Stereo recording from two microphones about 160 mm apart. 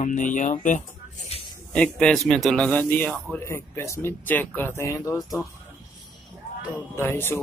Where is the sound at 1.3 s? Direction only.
40° left (ahead or behind).